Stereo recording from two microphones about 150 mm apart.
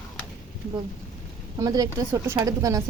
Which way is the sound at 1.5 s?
25° right (ahead or behind).